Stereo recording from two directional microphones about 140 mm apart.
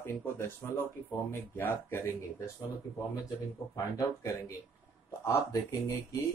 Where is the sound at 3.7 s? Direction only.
25° left (ahead or behind).